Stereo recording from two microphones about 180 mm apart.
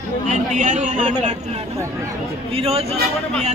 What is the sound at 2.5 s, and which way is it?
Speech, 30° right (ahead or behind).